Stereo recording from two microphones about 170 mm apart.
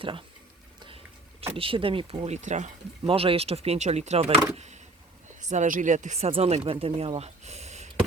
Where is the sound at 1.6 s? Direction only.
30° right (ahead or behind).